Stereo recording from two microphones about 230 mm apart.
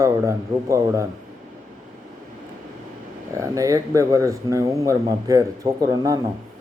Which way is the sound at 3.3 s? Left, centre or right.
Centre.